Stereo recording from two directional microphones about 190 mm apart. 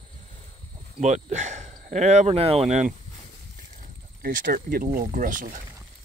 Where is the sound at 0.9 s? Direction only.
40° right (ahead or behind).